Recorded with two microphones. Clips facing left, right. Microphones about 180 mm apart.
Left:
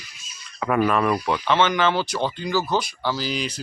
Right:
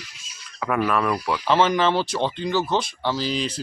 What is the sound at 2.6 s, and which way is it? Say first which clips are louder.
Speech: even; 5° left (ahead or behind).